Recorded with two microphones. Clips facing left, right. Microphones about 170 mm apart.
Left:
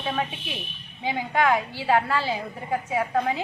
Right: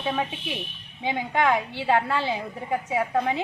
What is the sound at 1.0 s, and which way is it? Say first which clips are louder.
A woman's voice: even; 20° right (ahead or behind).